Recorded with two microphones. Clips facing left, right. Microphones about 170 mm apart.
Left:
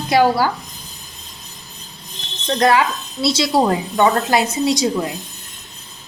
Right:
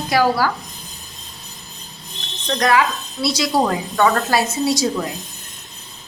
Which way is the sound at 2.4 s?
30° left (ahead or behind).